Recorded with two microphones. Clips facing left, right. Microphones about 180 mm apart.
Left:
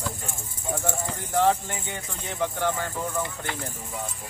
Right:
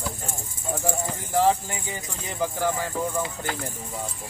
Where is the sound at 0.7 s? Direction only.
5° right (ahead or behind).